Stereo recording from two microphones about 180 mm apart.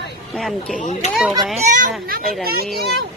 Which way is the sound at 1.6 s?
45° right (ahead or behind).